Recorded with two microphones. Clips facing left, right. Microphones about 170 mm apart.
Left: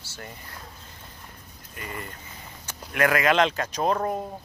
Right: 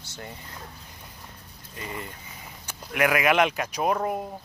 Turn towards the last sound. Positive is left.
turn(degrees=-10)  # may be behind; listen again after turning